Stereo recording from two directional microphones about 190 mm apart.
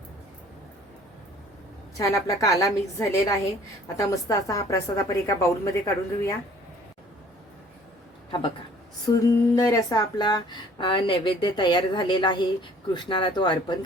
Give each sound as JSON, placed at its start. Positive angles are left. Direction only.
{"t": 2.0, "sound": "a woman's voice", "side_deg": 20}
{"t": 9.0, "sound": "speech", "side_deg": 15}